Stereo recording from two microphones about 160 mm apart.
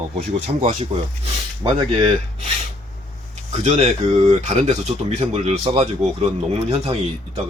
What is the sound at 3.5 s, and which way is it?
Speech, 45° right (ahead or behind).